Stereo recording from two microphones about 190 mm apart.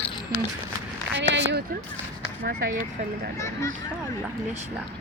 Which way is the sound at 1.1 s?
70° right (ahead or behind).